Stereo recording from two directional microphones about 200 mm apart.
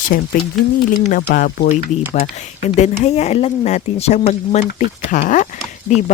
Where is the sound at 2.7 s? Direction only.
35° left (ahead or behind).